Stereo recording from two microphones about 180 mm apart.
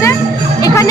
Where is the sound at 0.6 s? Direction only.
20° left (ahead or behind).